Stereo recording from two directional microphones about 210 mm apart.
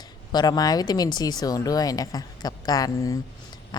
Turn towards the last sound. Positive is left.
turn(degrees=15)  # may be behind; listen again after turning